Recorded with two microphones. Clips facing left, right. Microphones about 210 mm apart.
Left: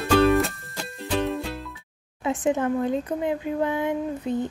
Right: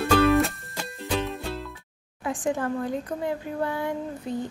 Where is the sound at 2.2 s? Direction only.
20° left (ahead or behind).